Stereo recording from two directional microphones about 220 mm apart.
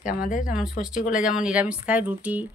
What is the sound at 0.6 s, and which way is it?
Speech, 5° right (ahead or behind).